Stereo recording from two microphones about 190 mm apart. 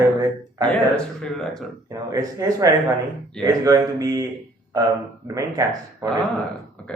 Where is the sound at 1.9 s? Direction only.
20° right (ahead or behind).